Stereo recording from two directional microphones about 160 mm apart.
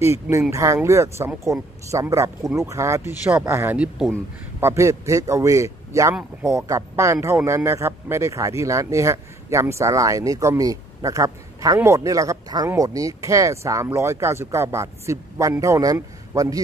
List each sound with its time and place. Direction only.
0.0 s speech: 15° right (ahead or behind)